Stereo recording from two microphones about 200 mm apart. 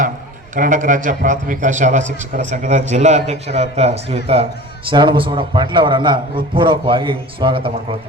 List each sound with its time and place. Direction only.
0.5 s a man's voice: 40° right (ahead or behind)